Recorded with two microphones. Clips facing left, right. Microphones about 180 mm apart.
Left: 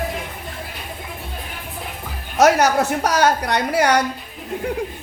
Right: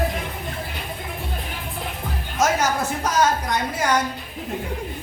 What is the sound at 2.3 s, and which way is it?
A woman's voice, 70° left (ahead or behind).